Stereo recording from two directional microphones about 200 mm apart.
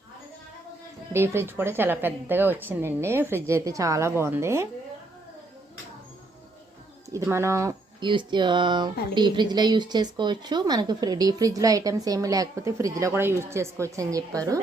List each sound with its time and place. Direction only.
1.1 s speech: 10° right (ahead or behind)
7.1 s speech: 15° right (ahead or behind)